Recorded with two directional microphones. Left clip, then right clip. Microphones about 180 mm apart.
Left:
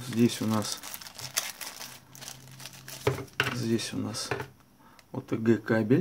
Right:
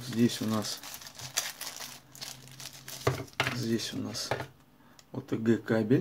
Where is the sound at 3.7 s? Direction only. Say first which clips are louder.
Left 2 dB; 25° left (ahead or behind).